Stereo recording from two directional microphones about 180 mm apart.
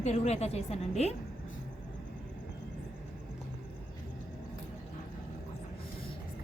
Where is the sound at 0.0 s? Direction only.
35° left (ahead or behind).